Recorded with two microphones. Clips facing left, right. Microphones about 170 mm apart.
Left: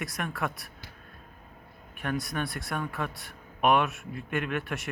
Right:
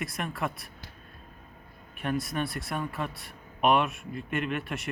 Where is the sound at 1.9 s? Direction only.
Centre (ahead or behind).